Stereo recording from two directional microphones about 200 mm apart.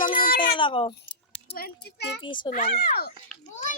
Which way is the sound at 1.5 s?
50° left (ahead or behind).